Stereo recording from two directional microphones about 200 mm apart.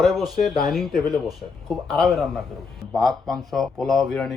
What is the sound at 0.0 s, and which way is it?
Speech, centre (ahead or behind).